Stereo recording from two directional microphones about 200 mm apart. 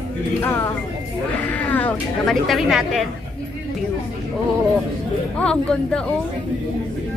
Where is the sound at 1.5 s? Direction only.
10° left (ahead or behind).